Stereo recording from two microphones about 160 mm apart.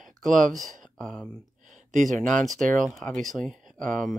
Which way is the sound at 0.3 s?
55° right (ahead or behind).